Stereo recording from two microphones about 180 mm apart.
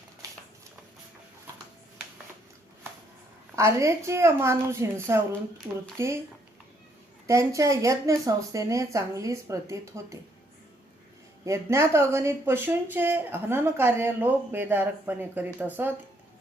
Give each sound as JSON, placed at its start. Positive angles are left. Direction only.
{"t": 3.5, "sound": "speech", "side_deg": -15}
{"t": 7.3, "sound": "speech", "side_deg": -15}
{"t": 11.4, "sound": "speech", "side_deg": -15}